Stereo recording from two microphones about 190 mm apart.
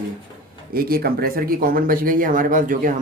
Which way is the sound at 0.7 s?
50° right (ahead or behind).